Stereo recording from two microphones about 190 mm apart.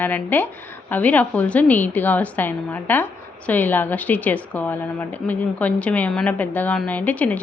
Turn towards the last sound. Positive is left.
turn(degrees=10)  # may be behind; listen again after turning